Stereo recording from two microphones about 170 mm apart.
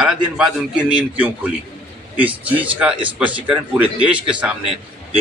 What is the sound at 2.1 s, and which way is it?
A man's voice, 10° right (ahead or behind).